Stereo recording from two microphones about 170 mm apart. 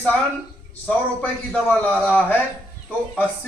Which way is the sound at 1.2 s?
10° left (ahead or behind).